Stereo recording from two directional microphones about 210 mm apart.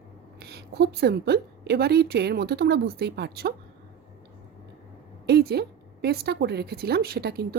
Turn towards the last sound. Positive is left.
turn(degrees=-50)  # may be behind; listen again after turning